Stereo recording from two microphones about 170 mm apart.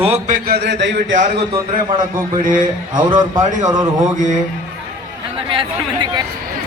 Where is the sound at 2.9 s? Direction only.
25° right (ahead or behind).